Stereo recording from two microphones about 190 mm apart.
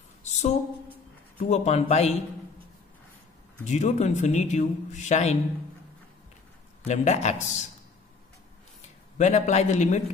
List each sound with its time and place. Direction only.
0.2 s a sound: 35° left (ahead or behind)
1.4 s a man's voice: 35° left (ahead or behind)
3.6 s a man's voice: 40° left (ahead or behind)
6.9 s a man's voice: 35° left (ahead or behind)
9.2 s a man's voice: 35° left (ahead or behind)